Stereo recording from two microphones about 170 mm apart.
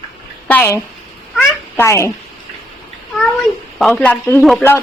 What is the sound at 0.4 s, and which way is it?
Speech, 10° left (ahead or behind).